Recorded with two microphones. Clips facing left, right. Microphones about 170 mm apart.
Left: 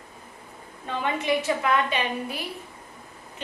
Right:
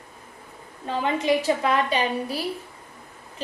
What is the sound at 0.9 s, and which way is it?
A woman's voice, 30° right (ahead or behind).